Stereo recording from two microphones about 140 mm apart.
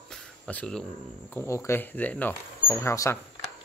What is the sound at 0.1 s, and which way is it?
Cricket, 10° left (ahead or behind).